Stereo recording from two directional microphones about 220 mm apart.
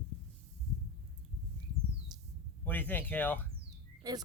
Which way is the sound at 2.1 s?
20° right (ahead or behind).